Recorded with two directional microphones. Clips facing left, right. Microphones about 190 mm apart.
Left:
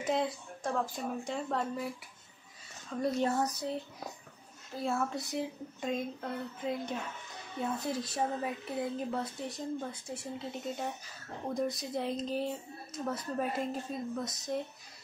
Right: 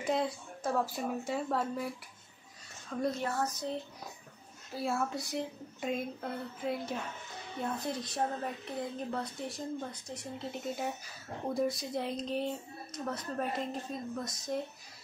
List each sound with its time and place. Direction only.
0.0 s speech: centre (ahead or behind)
3.2 s a sound: 20° left (ahead or behind)
4.7 s speech: centre (ahead or behind)